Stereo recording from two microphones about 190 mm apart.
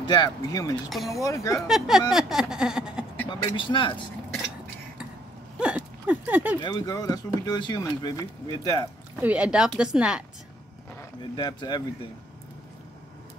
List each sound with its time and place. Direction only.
0.0 s speech: 20° left (ahead or behind)
0.8 s speech: centre (ahead or behind)
1.2 s speech: 15° left (ahead or behind)
1.7 s speech: centre (ahead or behind)
3.3 s speech: 25° left (ahead or behind)
5.6 s a sound: 5° right (ahead or behind)
6.6 s speech: 20° left (ahead or behind)
9.2 s speech: 5° right (ahead or behind)
11.3 s speech: 20° left (ahead or behind)